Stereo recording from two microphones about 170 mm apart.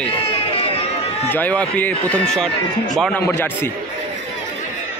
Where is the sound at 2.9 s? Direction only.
5° left (ahead or behind).